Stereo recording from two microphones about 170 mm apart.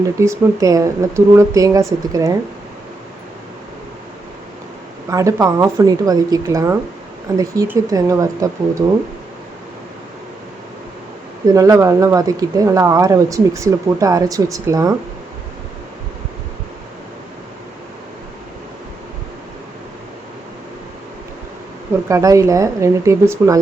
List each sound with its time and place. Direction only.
0.0 s speech: 20° right (ahead or behind)
5.0 s speech: 20° right (ahead or behind)
11.4 s speech: 20° right (ahead or behind)
22.1 s speech: 20° right (ahead or behind)